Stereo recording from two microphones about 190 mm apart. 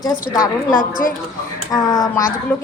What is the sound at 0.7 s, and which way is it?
Speech, 45° left (ahead or behind).